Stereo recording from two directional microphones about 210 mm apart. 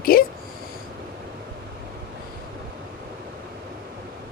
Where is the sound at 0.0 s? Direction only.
45° left (ahead or behind).